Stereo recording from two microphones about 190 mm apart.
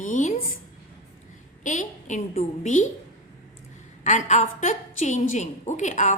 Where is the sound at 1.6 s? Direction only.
40° left (ahead or behind).